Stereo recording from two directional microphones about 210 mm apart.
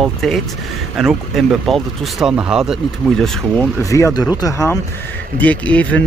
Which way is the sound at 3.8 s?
15° left (ahead or behind).